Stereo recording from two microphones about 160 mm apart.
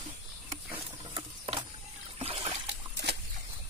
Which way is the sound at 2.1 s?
35° right (ahead or behind).